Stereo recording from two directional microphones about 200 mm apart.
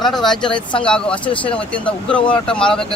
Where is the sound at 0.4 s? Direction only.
25° left (ahead or behind).